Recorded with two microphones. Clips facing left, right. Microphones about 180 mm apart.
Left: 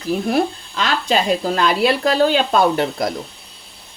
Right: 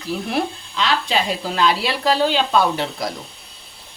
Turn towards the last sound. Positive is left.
turn(degrees=50)  # may be behind; listen again after turning